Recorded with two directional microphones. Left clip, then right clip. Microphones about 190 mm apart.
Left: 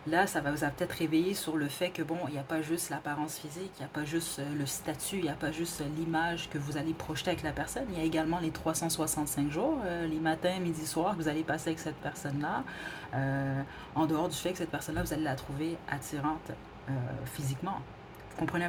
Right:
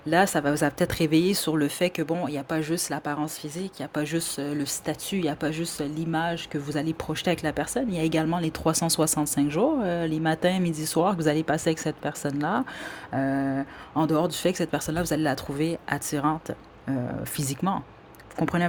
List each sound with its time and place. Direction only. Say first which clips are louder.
0.1 s speech: right 7 dB; 45° right (ahead or behind)
17.3 s speech: right 10 dB; 45° right (ahead or behind)